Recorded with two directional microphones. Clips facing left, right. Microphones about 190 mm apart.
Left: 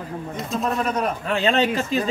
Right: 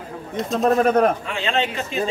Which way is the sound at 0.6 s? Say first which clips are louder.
Right 7 dB; 45° right (ahead or behind).